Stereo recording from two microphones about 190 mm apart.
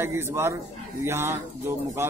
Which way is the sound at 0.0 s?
15° right (ahead or behind).